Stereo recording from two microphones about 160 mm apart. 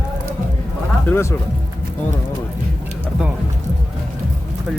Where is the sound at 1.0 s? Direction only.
15° left (ahead or behind).